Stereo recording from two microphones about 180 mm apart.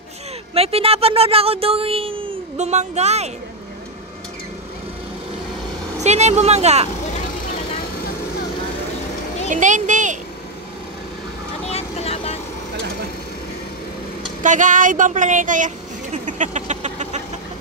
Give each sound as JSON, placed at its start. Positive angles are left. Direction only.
{"t": 0.6, "sound": "speech", "side_deg": -35}
{"t": 6.0, "sound": "speech", "side_deg": -40}
{"t": 9.5, "sound": "speech", "side_deg": -45}
{"t": 11.6, "sound": "vehicle", "side_deg": 35}
{"t": 14.4, "sound": "speech", "side_deg": -45}